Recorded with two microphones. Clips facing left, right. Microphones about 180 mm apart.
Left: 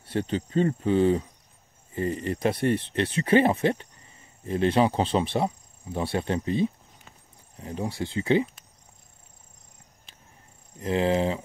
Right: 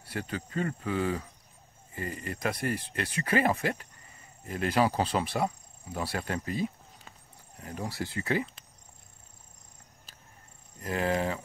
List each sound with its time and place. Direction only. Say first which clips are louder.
0.0 s speech: left 8 dB; 25° left (ahead or behind)
10.8 s speech: left 6 dB; 25° left (ahead or behind)